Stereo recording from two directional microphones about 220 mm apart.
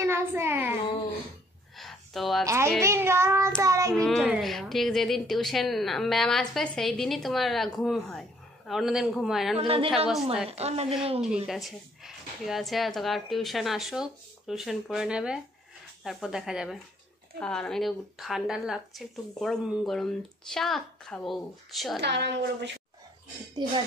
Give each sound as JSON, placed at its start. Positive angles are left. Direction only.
{"t": 0.0, "sound": "a child's voice", "side_deg": -10}
{"t": 1.8, "sound": "a sound", "side_deg": 0}
{"t": 2.4, "sound": "a child's voice", "side_deg": -10}
{"t": 2.8, "sound": "child singing", "side_deg": -10}
{"t": 3.9, "sound": "a woman's voice", "side_deg": 5}
{"t": 9.6, "sound": "a woman's voice", "side_deg": -25}
{"t": 11.4, "sound": "a woman's voice", "side_deg": 0}
{"t": 22.0, "sound": "a woman's voice", "side_deg": -50}
{"t": 23.6, "sound": "a woman's voice", "side_deg": -20}